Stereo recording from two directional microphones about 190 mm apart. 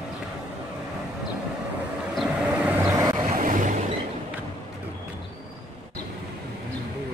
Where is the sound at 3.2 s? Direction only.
45° right (ahead or behind).